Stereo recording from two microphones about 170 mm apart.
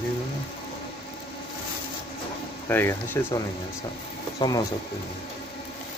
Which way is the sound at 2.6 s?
15° left (ahead or behind).